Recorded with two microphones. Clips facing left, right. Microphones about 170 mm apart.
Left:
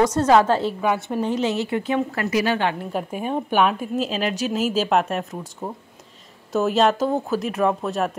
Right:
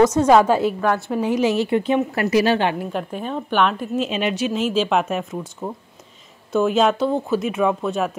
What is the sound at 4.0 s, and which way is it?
Speech, 40° left (ahead or behind).